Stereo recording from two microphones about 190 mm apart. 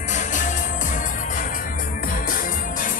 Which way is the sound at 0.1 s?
40° left (ahead or behind).